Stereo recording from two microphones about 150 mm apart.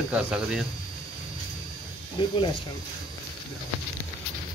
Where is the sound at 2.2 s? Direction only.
30° left (ahead or behind).